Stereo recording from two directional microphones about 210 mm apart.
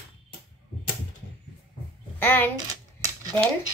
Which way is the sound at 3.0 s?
15° right (ahead or behind).